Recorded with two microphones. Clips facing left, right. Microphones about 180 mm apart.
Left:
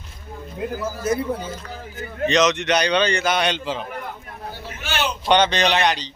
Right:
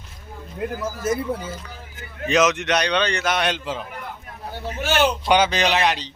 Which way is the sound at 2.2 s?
5° right (ahead or behind).